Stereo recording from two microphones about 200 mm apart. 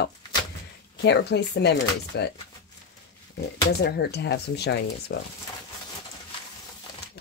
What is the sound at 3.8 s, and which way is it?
Speech, 55° left (ahead or behind).